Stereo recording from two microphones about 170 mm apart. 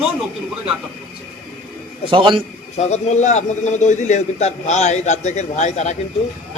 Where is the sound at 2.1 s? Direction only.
30° right (ahead or behind).